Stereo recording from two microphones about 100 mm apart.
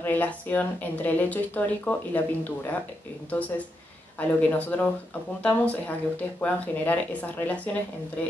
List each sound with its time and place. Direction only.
0.0 s speech: 15° left (ahead or behind)